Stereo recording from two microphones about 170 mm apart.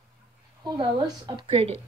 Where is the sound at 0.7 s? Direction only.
25° right (ahead or behind).